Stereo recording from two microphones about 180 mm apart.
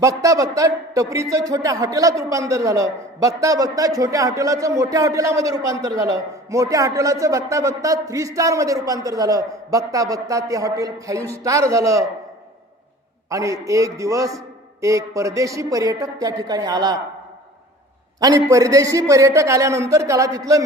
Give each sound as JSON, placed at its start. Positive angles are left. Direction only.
{"t": 0.0, "sound": "a man's voice", "side_deg": -20}
{"t": 13.3, "sound": "a man's voice", "side_deg": -15}
{"t": 18.2, "sound": "a man's voice", "side_deg": -20}